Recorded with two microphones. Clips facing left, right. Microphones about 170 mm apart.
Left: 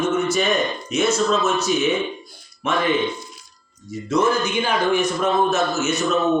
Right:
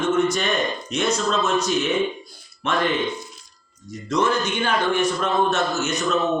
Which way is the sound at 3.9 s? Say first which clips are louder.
Left 2 dB; 5° left (ahead or behind).